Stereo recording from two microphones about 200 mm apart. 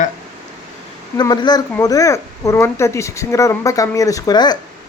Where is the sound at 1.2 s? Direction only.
20° left (ahead or behind).